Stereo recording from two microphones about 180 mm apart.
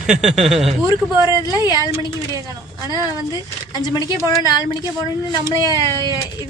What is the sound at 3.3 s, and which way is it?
Speech, 20° left (ahead or behind).